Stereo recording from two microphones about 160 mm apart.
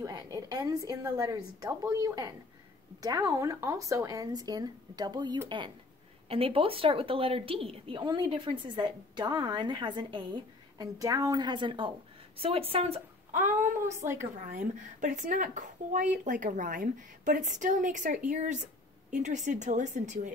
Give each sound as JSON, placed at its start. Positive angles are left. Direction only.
{"t": 0.0, "sound": "a woman's voice", "side_deg": -20}